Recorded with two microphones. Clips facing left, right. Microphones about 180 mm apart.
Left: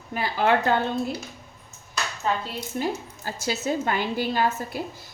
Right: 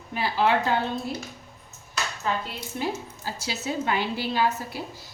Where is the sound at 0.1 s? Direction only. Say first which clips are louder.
Left 1 dB; 50° left (ahead or behind).